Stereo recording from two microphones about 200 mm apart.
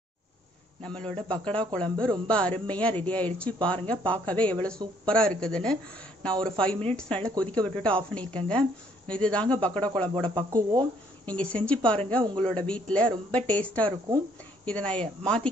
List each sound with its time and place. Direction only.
0.8 s speech: 5° left (ahead or behind)
10.3 s speech: 20° right (ahead or behind)
11.2 s speech: 5° left (ahead or behind)